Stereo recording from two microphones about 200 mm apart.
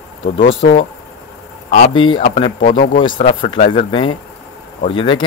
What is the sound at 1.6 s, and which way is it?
Speech, 30° left (ahead or behind).